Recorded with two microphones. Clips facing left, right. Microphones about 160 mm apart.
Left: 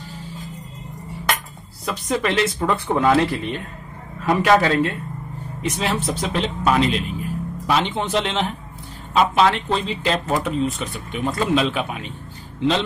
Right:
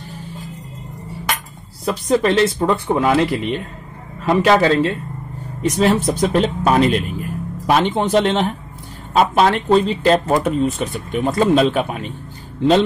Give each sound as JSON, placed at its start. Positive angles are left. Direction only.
{"t": 1.9, "sound": "a man's voice", "side_deg": -35}
{"t": 5.6, "sound": "speech", "side_deg": -40}